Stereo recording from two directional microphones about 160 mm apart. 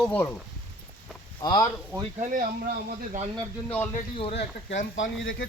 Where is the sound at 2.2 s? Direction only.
55° right (ahead or behind).